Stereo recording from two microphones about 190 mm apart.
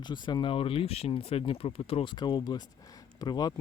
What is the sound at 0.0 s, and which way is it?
Speech, 25° left (ahead or behind).